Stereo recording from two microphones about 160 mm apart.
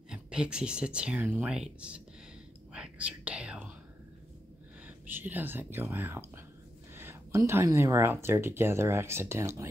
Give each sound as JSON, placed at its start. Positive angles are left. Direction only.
{"t": 0.1, "sound": "speech", "side_deg": -5}
{"t": 2.7, "sound": "whispering", "side_deg": -5}
{"t": 4.8, "sound": "speech", "side_deg": -10}